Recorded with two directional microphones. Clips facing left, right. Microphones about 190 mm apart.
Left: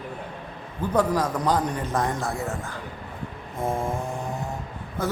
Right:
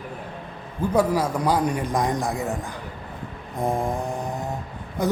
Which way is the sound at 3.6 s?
15° right (ahead or behind).